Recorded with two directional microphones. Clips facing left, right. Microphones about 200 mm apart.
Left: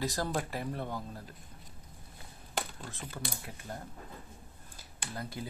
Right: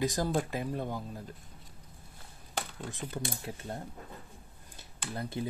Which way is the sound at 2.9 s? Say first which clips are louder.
Right 4 dB; 15° right (ahead or behind).